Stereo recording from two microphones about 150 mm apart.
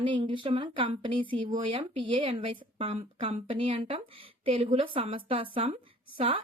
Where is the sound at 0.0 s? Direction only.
35° right (ahead or behind).